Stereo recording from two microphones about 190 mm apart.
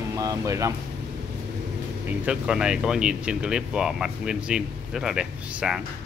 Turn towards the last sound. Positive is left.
turn(degrees=-5)  # may be behind; listen again after turning